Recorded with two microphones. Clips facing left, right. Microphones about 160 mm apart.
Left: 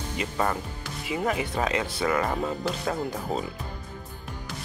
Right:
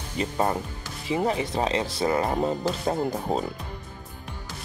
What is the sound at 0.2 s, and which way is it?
Speech, 30° right (ahead or behind).